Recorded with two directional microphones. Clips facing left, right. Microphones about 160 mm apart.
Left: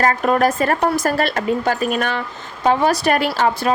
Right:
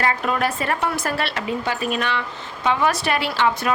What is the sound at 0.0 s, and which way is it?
A woman's voice, 45° left (ahead or behind).